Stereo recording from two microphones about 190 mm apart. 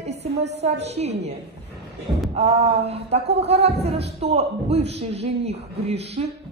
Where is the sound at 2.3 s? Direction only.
30° right (ahead or behind).